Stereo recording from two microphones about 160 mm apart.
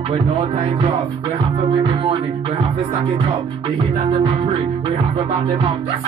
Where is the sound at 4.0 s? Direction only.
40° right (ahead or behind).